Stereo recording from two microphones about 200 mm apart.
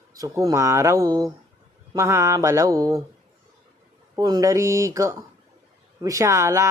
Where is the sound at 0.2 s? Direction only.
15° right (ahead or behind).